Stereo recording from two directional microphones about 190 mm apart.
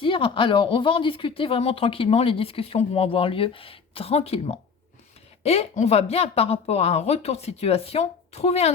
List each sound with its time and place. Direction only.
0.0 s speech: 25° left (ahead or behind)